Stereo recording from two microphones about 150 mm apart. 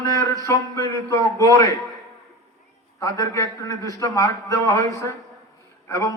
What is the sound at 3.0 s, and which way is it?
A man's voice, 20° left (ahead or behind).